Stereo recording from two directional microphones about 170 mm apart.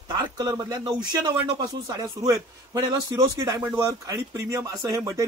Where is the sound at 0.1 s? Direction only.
25° right (ahead or behind).